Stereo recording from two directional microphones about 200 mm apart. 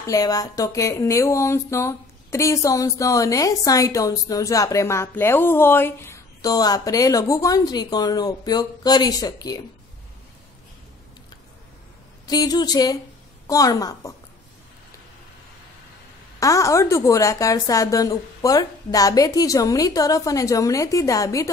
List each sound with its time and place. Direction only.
0.0 s speech: 20° left (ahead or behind)
12.3 s speech: 20° left (ahead or behind)
16.3 s speech: 15° left (ahead or behind)